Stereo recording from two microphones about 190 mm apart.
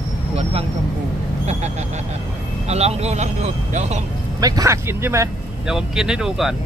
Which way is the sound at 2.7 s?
35° right (ahead or behind).